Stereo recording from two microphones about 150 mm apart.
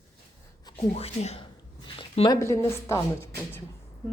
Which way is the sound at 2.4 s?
20° left (ahead or behind).